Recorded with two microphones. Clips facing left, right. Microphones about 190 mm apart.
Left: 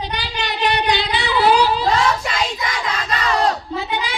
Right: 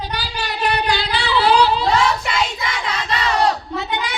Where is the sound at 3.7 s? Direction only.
30° left (ahead or behind).